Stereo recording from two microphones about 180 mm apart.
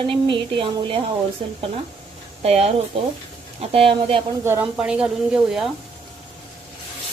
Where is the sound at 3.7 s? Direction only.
30° right (ahead or behind).